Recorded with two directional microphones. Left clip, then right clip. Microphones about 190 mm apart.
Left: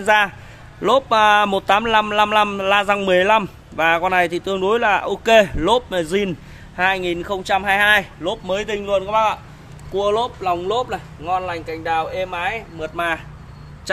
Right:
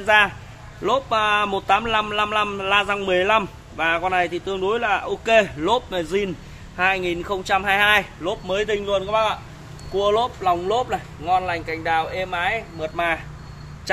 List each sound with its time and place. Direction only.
0.0 s a man's voice: 55° left (ahead or behind)
6.8 s speech: 30° left (ahead or behind)
9.9 s speech: 20° left (ahead or behind)